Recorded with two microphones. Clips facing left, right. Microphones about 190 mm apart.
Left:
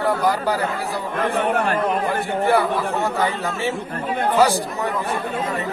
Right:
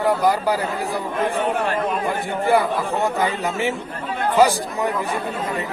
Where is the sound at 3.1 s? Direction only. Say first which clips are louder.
Right 1 dB; 15° right (ahead or behind).